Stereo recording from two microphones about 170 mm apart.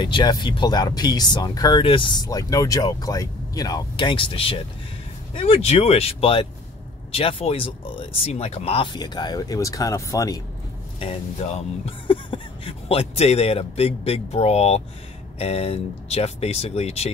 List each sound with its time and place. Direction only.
0.0 s speech: 25° left (ahead or behind)
11.0 s speech: 35° left (ahead or behind)